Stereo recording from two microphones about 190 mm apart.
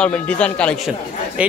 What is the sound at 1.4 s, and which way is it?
Speech, 5° right (ahead or behind).